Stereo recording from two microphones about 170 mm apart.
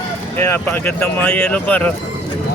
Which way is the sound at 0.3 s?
15° left (ahead or behind).